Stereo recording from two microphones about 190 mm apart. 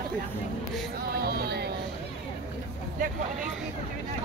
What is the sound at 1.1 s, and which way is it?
Music, 55° right (ahead or behind).